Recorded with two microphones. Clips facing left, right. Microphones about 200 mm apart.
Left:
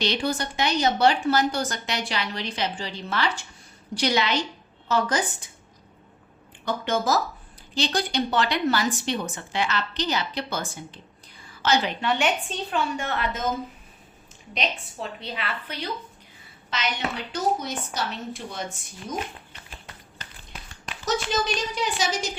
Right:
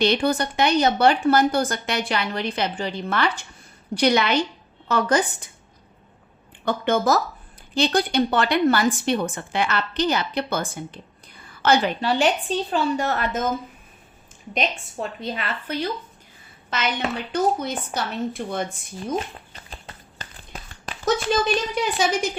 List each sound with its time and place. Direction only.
0.0 s a woman's voice: 55° right (ahead or behind)
6.7 s a woman's voice: 55° right (ahead or behind)
12.0 s a woman's voice: 35° right (ahead or behind)
15.2 s a woman's voice: 45° right (ahead or behind)
21.0 s speech: 55° right (ahead or behind)